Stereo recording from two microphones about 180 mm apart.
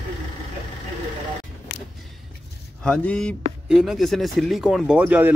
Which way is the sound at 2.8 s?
5° left (ahead or behind).